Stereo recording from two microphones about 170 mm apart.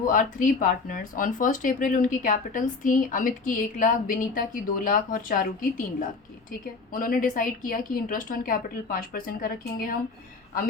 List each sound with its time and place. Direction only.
0.0 s speech: 50° left (ahead or behind)
6.9 s a woman's voice: 55° left (ahead or behind)